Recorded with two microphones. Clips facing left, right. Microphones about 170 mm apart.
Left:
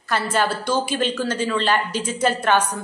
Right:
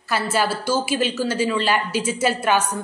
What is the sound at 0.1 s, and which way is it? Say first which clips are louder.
A woman's voice: even; 10° right (ahead or behind).